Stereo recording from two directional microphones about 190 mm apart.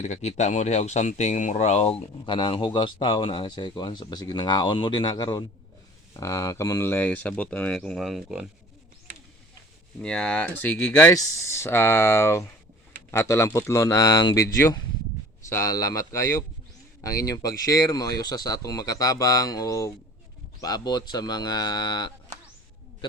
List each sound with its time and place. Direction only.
0.0 s speech: 35° left (ahead or behind); by 8.4 s centre (ahead or behind)
10.0 s speech: 5° left (ahead or behind)
15.4 s speech: 15° left (ahead or behind)